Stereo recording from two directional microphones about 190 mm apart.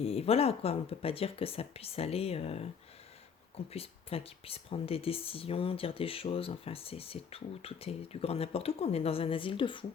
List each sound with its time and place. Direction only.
0.0 s speech: 30° left (ahead or behind)
3.7 s speech: 30° left (ahead or behind)